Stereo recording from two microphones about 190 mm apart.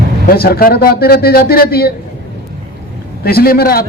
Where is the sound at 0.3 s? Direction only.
55° left (ahead or behind).